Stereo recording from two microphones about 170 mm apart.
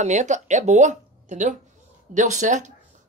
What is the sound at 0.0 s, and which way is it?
Speech, 45° right (ahead or behind).